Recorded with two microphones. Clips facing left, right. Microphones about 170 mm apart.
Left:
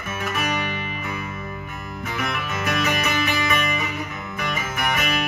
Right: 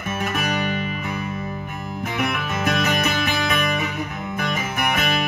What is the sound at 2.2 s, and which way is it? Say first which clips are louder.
Music: right 3 dB; 55° right (ahead or behind).